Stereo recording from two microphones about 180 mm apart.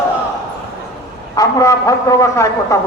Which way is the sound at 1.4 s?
20° left (ahead or behind).